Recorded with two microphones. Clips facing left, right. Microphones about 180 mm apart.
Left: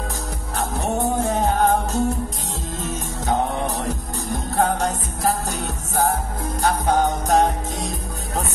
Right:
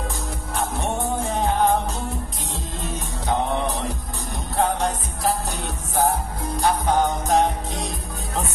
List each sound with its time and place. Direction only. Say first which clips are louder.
0.6 s music: left 2 dB; 40° left (ahead or behind)
4.6 s music: left 1 dB; 45° left (ahead or behind)
6.6 s music: left 1 dB; 45° left (ahead or behind)